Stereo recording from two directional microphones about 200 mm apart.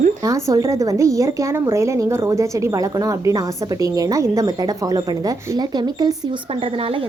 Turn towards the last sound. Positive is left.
turn(degrees=-20)  # may be behind; listen again after turning